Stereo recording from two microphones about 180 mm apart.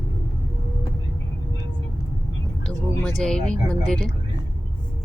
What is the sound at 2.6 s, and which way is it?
Speech, 5° left (ahead or behind).